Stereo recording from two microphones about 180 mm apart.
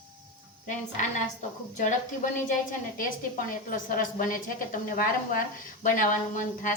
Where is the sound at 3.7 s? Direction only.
50° left (ahead or behind).